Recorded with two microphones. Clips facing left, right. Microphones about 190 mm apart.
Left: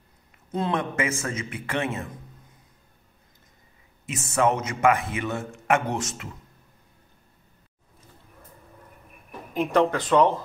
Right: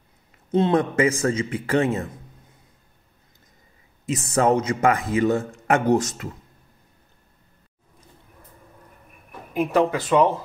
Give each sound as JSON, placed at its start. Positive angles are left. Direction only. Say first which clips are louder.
{"t": 0.5, "sound": "a man's voice", "louder": "right 7 dB", "side_deg": -25}
{"t": 4.0, "sound": "a man's voice", "louder": "right 3 dB", "side_deg": -35}
{"t": 9.5, "sound": "speech", "louder": "right 1 dB", "side_deg": -5}